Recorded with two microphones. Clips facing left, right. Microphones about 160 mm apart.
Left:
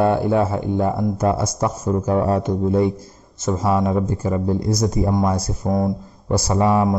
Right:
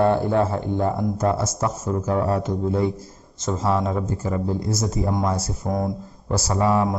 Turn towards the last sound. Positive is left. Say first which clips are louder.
# left 3 dB
turn(degrees=20)  # may be behind; listen again after turning